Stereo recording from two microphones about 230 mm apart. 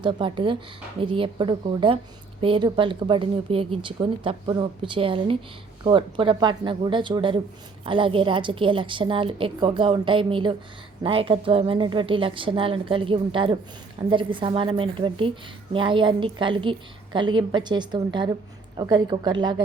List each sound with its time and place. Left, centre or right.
0.0 s speech: right